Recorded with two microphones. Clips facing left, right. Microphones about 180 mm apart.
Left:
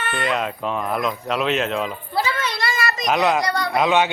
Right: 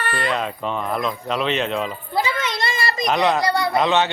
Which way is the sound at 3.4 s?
25° right (ahead or behind).